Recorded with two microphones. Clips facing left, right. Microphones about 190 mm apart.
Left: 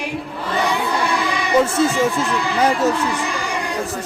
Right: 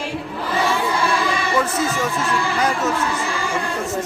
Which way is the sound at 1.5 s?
25° left (ahead or behind).